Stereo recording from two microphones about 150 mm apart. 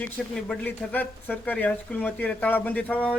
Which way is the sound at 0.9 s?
10° left (ahead or behind).